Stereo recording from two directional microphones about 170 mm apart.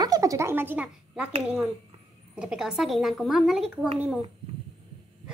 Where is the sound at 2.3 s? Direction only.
5° right (ahead or behind).